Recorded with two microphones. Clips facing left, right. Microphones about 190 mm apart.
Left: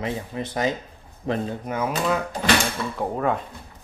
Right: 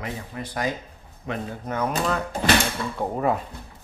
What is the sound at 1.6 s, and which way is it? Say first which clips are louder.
Speech: even; 10° left (ahead or behind).